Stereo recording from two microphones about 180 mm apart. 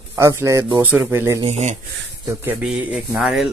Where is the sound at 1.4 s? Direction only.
35° right (ahead or behind).